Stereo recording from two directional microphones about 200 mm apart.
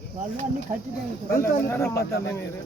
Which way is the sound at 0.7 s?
35° right (ahead or behind).